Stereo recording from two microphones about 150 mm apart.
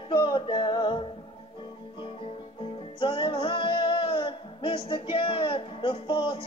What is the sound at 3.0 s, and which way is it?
Music, 35° left (ahead or behind).